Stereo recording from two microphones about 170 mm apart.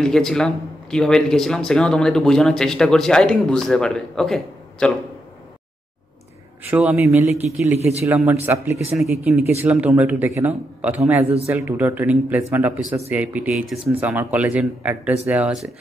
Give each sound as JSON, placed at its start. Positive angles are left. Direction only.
{"t": 0.0, "sound": "a man's voice", "side_deg": 5}
{"t": 6.7, "sound": "a man's voice", "side_deg": -5}
{"t": 7.6, "sound": "a man's voice", "side_deg": -15}
{"t": 8.9, "sound": "a man's voice", "side_deg": 0}